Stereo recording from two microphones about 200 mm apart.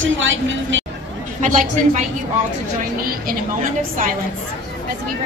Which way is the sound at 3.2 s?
45° right (ahead or behind).